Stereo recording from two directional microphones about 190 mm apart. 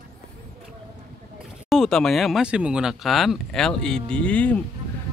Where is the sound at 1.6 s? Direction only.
Centre (ahead or behind).